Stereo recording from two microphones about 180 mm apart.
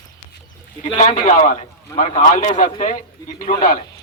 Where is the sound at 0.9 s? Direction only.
45° left (ahead or behind).